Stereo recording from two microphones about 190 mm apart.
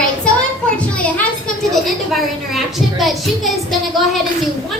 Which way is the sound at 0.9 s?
5° left (ahead or behind).